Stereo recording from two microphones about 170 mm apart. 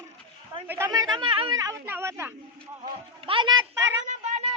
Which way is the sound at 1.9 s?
15° right (ahead or behind).